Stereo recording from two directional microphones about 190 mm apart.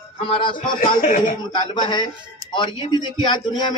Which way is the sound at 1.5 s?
25° left (ahead or behind).